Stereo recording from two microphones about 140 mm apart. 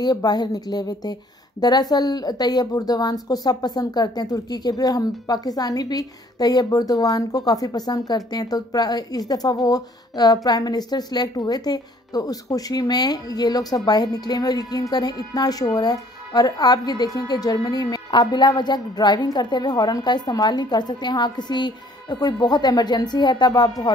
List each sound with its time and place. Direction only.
0.0 s a woman's voice: 30° left (ahead or behind)